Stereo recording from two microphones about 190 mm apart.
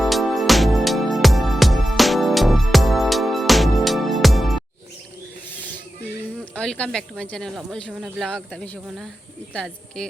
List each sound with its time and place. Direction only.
0.0 s music: centre (ahead or behind)
6.4 s speech: 5° left (ahead or behind)